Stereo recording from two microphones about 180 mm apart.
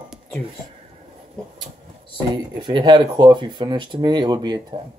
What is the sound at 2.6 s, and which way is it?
Speech, 25° right (ahead or behind).